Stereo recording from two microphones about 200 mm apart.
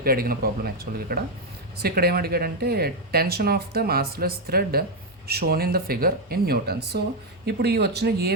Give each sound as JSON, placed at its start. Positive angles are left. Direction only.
{"t": 0.0, "sound": "speech", "side_deg": -50}